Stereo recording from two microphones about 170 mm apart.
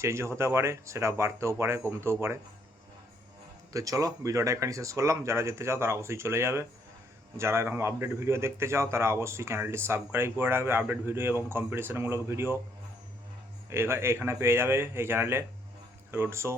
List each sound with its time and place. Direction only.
0.0 s speech: 15° right (ahead or behind)
3.7 s speech: 20° right (ahead or behind)
13.7 s speech: 15° right (ahead or behind)